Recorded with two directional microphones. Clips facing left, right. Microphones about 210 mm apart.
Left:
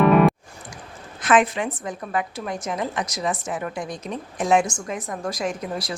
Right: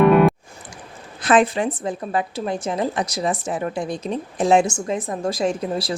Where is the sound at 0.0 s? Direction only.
Centre (ahead or behind).